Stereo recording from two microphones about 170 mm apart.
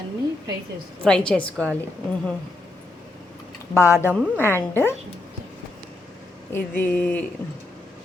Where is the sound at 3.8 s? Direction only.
15° left (ahead or behind).